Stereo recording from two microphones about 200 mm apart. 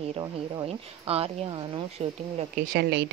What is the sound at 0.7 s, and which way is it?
Speech, 30° right (ahead or behind).